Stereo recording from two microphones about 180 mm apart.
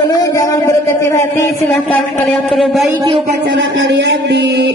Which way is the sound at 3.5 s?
90° right.